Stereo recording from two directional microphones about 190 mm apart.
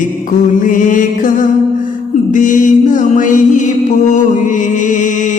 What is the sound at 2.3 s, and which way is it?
Mantra, 40° left (ahead or behind).